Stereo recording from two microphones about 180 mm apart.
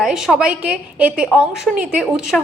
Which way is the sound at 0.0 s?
Centre (ahead or behind).